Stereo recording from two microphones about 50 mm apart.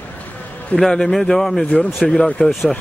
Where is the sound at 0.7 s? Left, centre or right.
Centre.